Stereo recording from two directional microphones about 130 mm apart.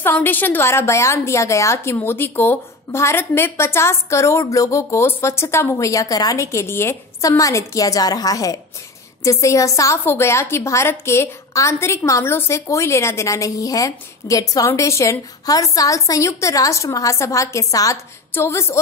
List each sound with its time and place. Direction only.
0.0 s a woman's voice: 15° left (ahead or behind)